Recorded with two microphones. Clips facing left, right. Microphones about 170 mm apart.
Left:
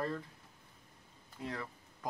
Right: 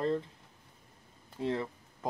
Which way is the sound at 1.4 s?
25° right (ahead or behind).